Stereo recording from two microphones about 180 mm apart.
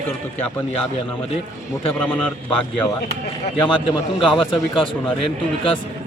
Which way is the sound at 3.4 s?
30° left (ahead or behind).